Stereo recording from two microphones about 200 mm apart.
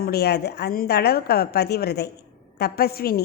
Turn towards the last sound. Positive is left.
turn(degrees=50)  # may be behind; listen again after turning